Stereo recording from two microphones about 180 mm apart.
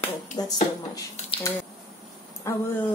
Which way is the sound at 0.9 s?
20° left (ahead or behind).